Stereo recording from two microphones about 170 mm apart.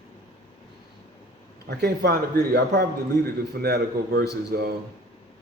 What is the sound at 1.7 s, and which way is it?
Speech, 75° right (ahead or behind).